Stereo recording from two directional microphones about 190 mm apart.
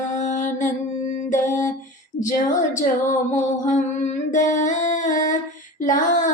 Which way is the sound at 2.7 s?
40° left (ahead or behind).